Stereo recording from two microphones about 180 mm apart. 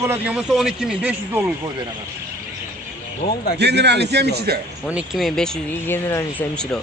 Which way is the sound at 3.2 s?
50° left (ahead or behind).